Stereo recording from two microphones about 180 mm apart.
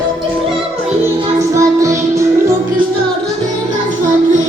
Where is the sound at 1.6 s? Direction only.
15° right (ahead or behind).